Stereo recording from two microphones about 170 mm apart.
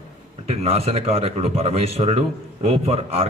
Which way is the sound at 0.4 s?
35° right (ahead or behind).